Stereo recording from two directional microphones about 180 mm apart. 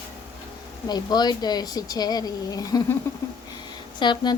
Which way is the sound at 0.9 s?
20° left (ahead or behind).